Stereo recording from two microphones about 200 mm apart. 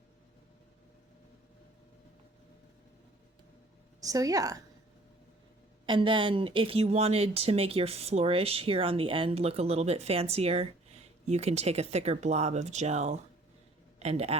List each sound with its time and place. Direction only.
4.0 s a woman's voice: 15° right (ahead or behind)
5.8 s a man's voice: 25° right (ahead or behind)